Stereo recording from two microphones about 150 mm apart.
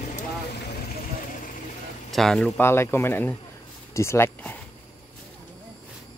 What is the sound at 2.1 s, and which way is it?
Speech, centre (ahead or behind).